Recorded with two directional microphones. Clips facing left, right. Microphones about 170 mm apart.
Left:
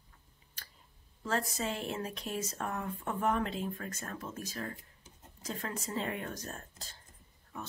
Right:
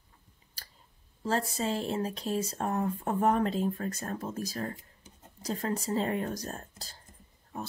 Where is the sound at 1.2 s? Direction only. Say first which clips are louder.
Right 4 dB; 30° right (ahead or behind).